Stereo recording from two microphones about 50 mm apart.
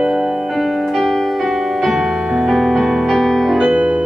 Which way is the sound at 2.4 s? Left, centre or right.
Centre.